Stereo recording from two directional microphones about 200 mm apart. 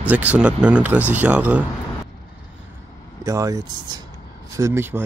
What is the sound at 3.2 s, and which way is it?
Speech, 15° right (ahead or behind).